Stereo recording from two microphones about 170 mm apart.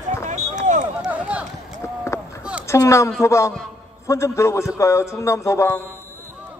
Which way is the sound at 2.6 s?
15° left (ahead or behind).